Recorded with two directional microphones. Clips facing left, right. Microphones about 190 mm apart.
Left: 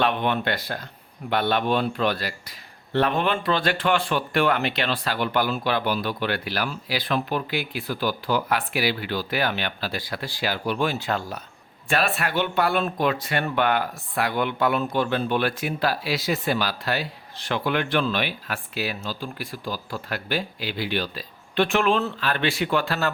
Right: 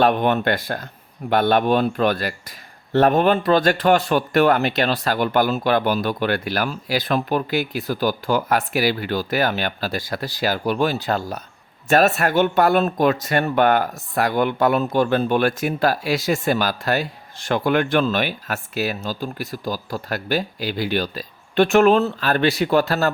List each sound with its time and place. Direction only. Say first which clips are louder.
0.0 s speech: right 6 dB; 45° right (ahead or behind)